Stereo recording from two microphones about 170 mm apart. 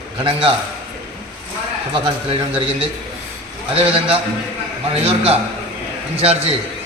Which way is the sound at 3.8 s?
35° right (ahead or behind).